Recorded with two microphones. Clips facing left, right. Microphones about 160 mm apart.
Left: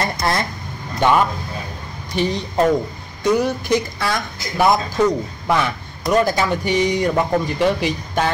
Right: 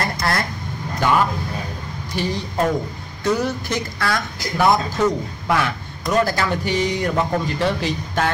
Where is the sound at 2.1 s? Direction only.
20° left (ahead or behind).